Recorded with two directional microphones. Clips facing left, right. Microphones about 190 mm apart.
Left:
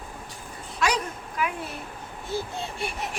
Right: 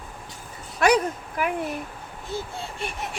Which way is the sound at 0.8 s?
55° right (ahead or behind).